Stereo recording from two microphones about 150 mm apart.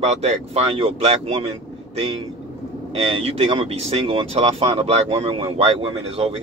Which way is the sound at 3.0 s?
40° right (ahead or behind).